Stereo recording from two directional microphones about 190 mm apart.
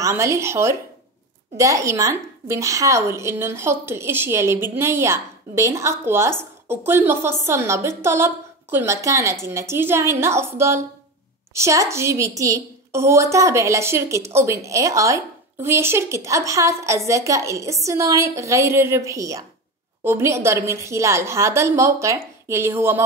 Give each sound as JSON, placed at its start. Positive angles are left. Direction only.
{"t": 0.0, "sound": "a woman's voice", "side_deg": -15}